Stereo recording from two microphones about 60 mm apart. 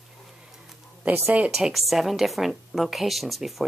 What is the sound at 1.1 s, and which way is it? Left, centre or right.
Speech, right.